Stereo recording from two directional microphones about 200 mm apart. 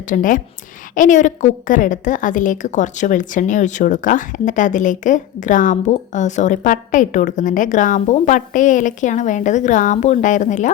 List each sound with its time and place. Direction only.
0.1 s a woman's voice: 40° left (ahead or behind)